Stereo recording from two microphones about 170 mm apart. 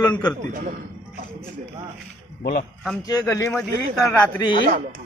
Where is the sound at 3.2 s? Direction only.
15° left (ahead or behind).